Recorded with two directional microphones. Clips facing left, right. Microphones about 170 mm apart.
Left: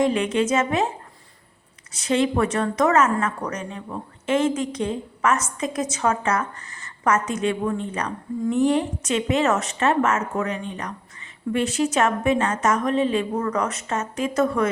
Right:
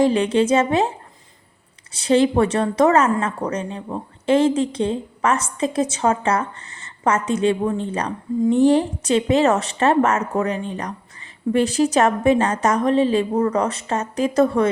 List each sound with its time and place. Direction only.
0.0 s speech: 30° right (ahead or behind)
1.9 s speech: 30° right (ahead or behind)